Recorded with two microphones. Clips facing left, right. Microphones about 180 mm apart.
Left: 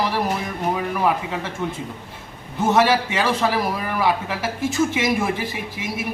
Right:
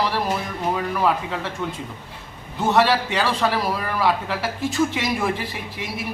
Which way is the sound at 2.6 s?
20° left (ahead or behind).